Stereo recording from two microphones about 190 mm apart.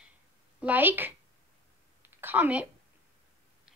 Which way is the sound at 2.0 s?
10° right (ahead or behind).